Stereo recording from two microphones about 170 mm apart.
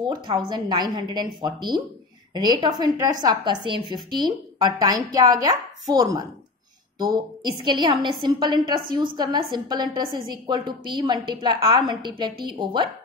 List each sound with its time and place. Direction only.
0.0 s a woman's voice: 30° right (ahead or behind)